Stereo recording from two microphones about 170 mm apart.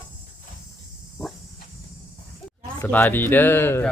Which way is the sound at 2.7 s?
10° left (ahead or behind).